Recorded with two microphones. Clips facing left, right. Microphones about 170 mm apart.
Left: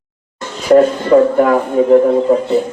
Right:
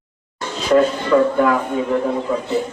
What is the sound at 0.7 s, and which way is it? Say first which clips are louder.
Speech: left 6 dB; 40° left (ahead or behind).